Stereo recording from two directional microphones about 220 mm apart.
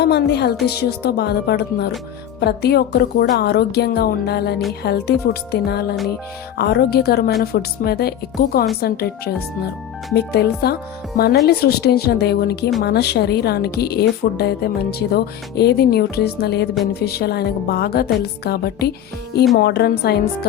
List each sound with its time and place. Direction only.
0.0 s a woman's voice: 50° left (ahead or behind)